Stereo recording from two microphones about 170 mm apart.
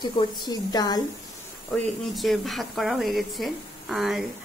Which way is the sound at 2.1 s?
Centre (ahead or behind).